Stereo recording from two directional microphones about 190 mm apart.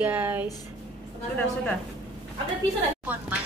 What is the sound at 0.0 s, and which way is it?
Speech, 10° right (ahead or behind).